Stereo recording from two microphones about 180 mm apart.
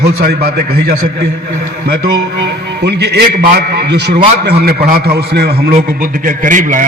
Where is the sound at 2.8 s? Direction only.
70° right (ahead or behind).